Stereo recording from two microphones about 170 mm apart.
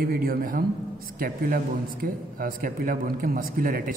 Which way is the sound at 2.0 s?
55° right (ahead or behind).